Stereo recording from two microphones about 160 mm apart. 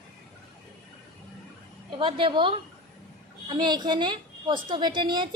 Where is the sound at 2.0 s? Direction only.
30° right (ahead or behind).